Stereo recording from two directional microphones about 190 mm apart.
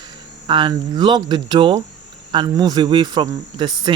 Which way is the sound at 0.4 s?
25° right (ahead or behind).